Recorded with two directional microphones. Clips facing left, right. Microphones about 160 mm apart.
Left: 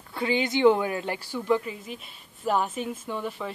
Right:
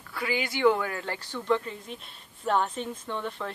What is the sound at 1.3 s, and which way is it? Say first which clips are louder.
A woman's voice: left 2 dB; 10° left (ahead or behind).